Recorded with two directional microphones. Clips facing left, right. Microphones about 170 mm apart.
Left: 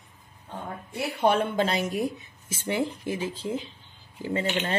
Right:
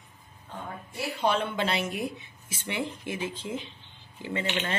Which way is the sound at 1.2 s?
50° left (ahead or behind).